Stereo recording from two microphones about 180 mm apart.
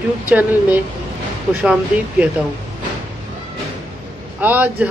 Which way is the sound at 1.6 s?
5° right (ahead or behind).